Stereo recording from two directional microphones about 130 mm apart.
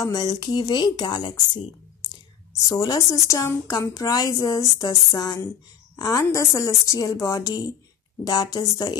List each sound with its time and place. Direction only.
0.0 s a woman's voice: 30° left (ahead or behind)
2.7 s a woman's voice: 30° left (ahead or behind)